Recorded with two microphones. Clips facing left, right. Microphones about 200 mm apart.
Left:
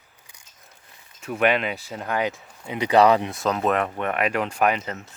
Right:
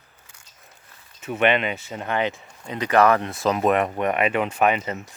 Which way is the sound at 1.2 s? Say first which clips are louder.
Right 1 dB; centre (ahead or behind).